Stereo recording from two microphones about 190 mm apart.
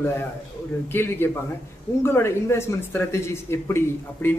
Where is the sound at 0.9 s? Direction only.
10° left (ahead or behind).